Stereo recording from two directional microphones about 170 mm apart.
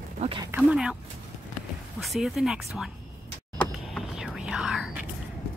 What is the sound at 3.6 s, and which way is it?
Whispering, centre (ahead or behind).